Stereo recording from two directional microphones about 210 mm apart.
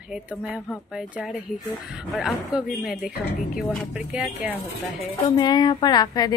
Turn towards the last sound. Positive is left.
turn(degrees=20)  # may be behind; listen again after turning